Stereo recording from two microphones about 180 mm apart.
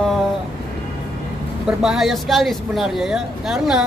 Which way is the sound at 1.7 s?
Centre (ahead or behind).